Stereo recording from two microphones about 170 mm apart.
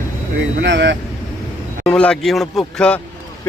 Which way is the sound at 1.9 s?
5° left (ahead or behind).